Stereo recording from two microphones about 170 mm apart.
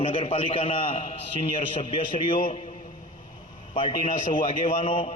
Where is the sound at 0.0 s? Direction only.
35° left (ahead or behind).